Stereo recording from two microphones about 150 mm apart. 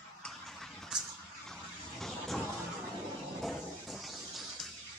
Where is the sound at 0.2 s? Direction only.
Centre (ahead or behind).